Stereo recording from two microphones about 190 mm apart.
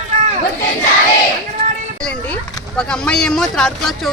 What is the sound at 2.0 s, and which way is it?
Speech, 5° left (ahead or behind).